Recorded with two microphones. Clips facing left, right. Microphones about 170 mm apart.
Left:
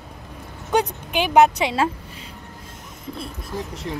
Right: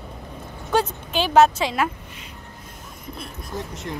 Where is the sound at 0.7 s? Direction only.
15° left (ahead or behind).